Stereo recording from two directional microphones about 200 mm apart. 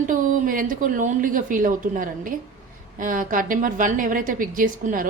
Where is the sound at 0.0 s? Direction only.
40° right (ahead or behind).